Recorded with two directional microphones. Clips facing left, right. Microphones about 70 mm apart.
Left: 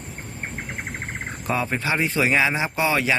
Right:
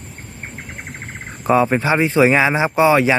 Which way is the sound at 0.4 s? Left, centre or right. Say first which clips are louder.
Left 1 dB; left.